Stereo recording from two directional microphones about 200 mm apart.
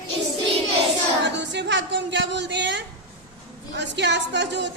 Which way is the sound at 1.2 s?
60° right (ahead or behind).